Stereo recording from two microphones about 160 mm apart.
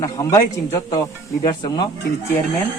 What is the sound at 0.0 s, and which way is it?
Speech, 20° left (ahead or behind).